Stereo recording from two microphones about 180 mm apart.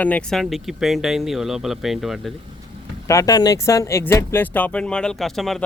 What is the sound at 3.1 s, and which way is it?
Speech, 20° left (ahead or behind).